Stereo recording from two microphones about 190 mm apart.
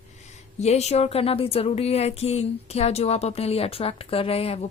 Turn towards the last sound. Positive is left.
turn(degrees=30)  # may be behind; listen again after turning